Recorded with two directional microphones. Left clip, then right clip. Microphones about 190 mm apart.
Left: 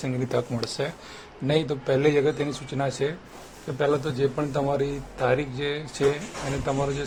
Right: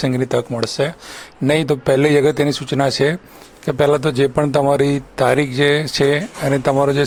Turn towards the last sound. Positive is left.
turn(degrees=-40)  # may be behind; listen again after turning